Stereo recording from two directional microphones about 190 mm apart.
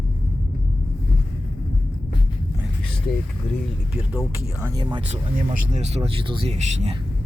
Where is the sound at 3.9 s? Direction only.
5° right (ahead or behind).